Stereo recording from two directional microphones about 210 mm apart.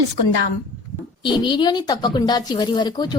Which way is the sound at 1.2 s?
20° left (ahead or behind).